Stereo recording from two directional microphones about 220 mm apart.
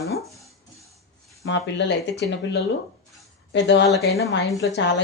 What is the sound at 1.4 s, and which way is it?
A woman's voice, 55° left (ahead or behind).